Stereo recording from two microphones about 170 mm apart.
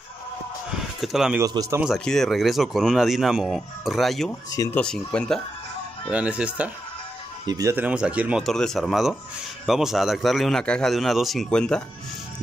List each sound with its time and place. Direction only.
0.7 s speech: centre (ahead or behind)
1.4 s a man's voice: 20° right (ahead or behind)
1.8 s speech: centre (ahead or behind)
4.3 s speech: 15° left (ahead or behind)
4.7 s speech: 5° left (ahead or behind)
6.0 s speech: 5° right (ahead or behind)
7.4 s a man's voice: 20° right (ahead or behind)
7.7 s speech: 10° right (ahead or behind)